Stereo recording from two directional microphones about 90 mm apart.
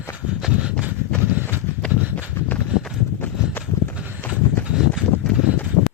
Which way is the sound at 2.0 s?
20° right (ahead or behind).